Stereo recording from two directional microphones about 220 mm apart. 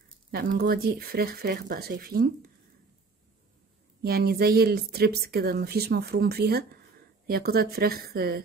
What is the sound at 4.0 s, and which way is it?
Speech, 45° right (ahead or behind).